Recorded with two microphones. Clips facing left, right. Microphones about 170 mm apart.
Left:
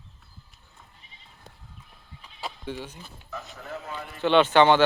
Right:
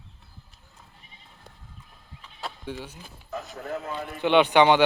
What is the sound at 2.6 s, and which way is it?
Speech, 10° right (ahead or behind).